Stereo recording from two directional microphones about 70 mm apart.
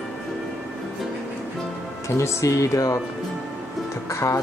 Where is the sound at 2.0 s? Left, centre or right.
Left.